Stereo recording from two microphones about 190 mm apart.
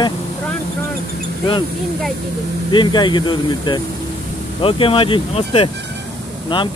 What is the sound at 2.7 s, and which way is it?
Speech, 25° left (ahead or behind).